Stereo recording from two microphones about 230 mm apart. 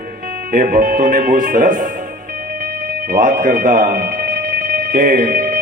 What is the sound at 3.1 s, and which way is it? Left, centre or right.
Speech, right.